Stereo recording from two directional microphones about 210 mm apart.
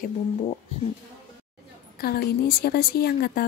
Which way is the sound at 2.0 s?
45° left (ahead or behind).